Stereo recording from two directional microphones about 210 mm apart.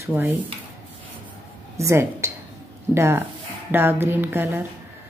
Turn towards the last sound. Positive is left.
turn(degrees=-10)  # may be behind; listen again after turning